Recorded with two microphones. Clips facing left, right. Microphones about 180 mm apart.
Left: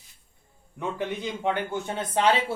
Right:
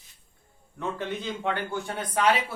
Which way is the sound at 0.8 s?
15° left (ahead or behind).